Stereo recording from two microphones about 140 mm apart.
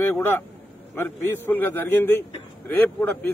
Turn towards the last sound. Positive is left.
turn(degrees=15)  # may be behind; listen again after turning